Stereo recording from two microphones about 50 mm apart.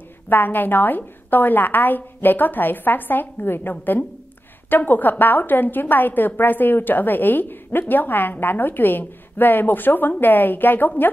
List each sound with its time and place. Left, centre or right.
0.3 s a woman's voice: left